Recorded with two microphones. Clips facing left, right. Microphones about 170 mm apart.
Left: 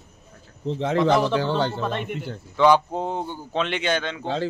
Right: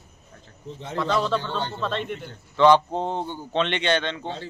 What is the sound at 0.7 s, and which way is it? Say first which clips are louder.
Speech: left 7 dB; 90° left.